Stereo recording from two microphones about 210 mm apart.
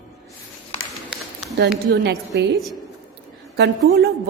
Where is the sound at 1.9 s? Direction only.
55° right (ahead or behind).